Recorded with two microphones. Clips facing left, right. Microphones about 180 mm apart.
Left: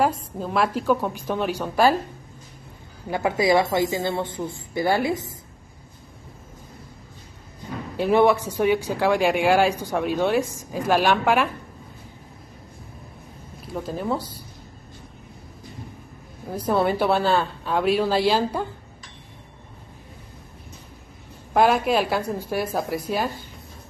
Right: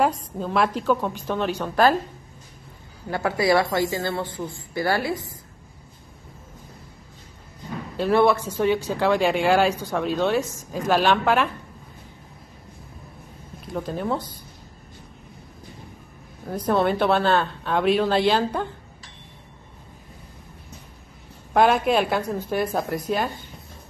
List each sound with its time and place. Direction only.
0.0 s speech: 5° left (ahead or behind)
3.1 s a woman's voice: 15° left (ahead or behind)
8.0 s speech: 15° left (ahead or behind)
13.7 s a woman's voice: centre (ahead or behind)
16.4 s a woman's voice: 5° left (ahead or behind)
21.5 s a woman's voice: centre (ahead or behind)